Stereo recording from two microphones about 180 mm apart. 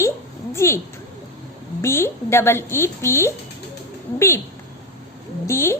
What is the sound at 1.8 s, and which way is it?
Speech, 15° left (ahead or behind).